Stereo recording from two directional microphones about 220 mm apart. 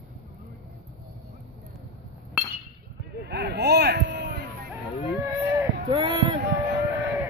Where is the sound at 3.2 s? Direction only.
50° right (ahead or behind).